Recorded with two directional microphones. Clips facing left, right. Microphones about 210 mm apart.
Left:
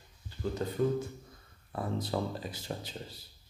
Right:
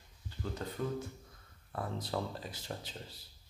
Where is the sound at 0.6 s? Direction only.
15° left (ahead or behind).